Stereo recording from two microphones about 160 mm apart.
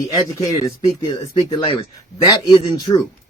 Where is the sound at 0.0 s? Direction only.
20° left (ahead or behind).